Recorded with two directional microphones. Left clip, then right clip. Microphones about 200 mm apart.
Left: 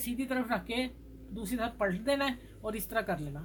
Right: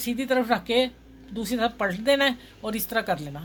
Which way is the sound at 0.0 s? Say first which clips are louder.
Right 10 dB; 50° right (ahead or behind).